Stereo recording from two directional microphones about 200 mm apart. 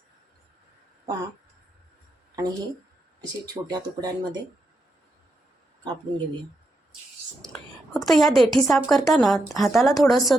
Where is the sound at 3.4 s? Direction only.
20° right (ahead or behind).